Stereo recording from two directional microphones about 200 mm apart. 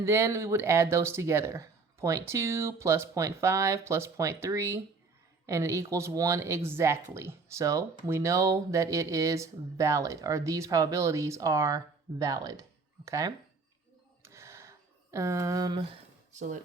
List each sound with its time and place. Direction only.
0.0 s speech: 15° right (ahead or behind)
14.2 s a sound: 15° right (ahead or behind)
16.3 s speech: 40° right (ahead or behind)